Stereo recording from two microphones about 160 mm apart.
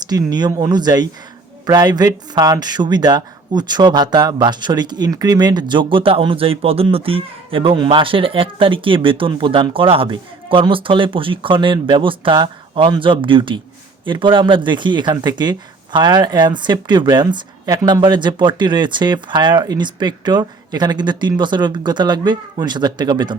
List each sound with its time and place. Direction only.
0.0 s speech: 25° right (ahead or behind)